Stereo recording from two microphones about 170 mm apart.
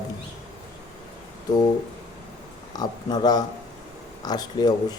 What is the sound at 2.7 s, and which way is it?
Speech, 25° left (ahead or behind).